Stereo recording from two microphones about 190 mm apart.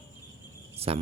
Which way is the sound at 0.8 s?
30° right (ahead or behind).